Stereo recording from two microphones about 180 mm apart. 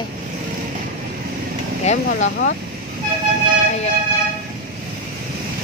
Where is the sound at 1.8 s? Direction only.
40° left (ahead or behind).